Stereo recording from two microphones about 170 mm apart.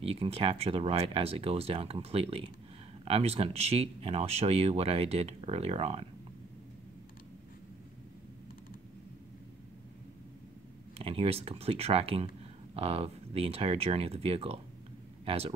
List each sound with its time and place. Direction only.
0.0 s speech: 35° right (ahead or behind)
11.0 s speech: 35° right (ahead or behind)